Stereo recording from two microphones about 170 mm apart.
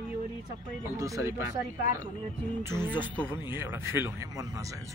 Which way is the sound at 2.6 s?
15° right (ahead or behind).